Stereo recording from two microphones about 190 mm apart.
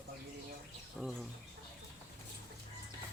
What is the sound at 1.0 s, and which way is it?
Bird, centre (ahead or behind).